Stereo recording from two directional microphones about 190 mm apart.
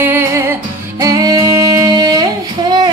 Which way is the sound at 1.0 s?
20° right (ahead or behind).